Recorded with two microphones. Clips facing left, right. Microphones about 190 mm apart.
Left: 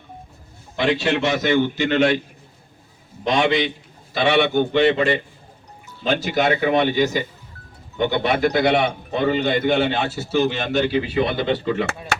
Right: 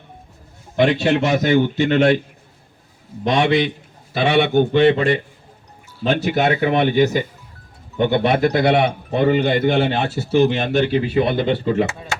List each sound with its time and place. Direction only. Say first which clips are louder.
0.8 s speech: right 4 dB; 55° right (ahead or behind)
3.2 s a man's voice: right 2 dB; 55° right (ahead or behind)
6.1 s a man's voice: right 1 dB; 60° right (ahead or behind); by 11.9 s 40° right (ahead or behind)